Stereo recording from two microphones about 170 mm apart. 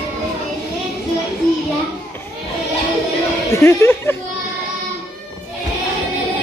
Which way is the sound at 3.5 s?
15° left (ahead or behind).